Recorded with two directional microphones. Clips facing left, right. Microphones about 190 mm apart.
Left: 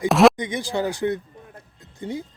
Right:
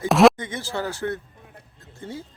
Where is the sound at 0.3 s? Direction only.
15° left (ahead or behind).